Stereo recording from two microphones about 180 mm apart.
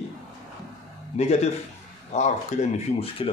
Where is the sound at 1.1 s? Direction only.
35° left (ahead or behind).